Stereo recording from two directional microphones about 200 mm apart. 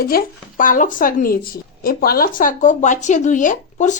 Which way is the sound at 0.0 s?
50° left (ahead or behind).